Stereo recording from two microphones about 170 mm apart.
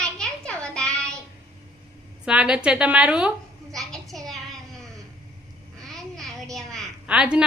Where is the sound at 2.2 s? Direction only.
5° right (ahead or behind).